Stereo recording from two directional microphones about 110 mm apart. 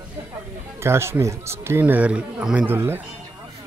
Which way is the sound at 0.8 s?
25° right (ahead or behind).